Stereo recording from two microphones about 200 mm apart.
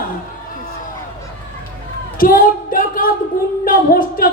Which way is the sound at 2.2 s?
45° left (ahead or behind).